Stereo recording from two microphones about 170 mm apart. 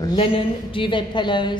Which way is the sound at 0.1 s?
30° left (ahead or behind).